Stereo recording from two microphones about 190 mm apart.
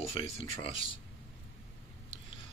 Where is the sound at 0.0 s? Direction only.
30° left (ahead or behind).